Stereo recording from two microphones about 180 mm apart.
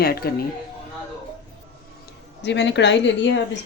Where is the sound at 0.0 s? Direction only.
60° left (ahead or behind).